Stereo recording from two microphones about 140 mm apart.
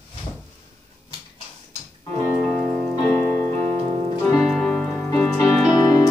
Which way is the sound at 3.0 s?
20° left (ahead or behind).